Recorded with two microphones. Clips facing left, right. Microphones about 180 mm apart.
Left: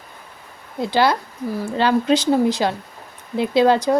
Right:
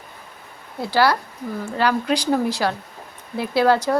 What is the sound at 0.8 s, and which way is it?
Speech, 20° left (ahead or behind).